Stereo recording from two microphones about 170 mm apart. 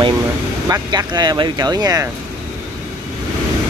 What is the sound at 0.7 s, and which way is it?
Speech, 25° right (ahead or behind).